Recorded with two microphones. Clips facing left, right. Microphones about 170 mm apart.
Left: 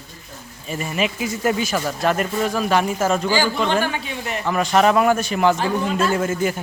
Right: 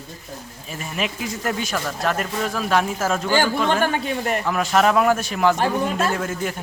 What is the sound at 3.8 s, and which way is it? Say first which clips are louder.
Speech: right 4 dB; 45° right (ahead or behind).